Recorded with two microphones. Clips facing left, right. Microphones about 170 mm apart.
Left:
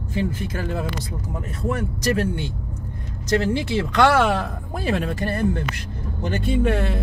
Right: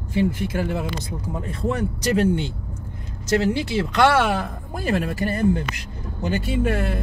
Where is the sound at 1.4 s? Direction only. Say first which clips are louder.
Right 1 dB; 25° right (ahead or behind).